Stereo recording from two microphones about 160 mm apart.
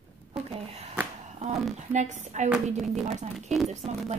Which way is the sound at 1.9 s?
50° right (ahead or behind).